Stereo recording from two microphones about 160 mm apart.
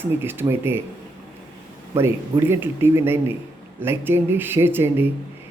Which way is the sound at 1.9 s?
15° right (ahead or behind).